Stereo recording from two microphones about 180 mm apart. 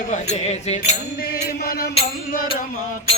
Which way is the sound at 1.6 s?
55° left (ahead or behind).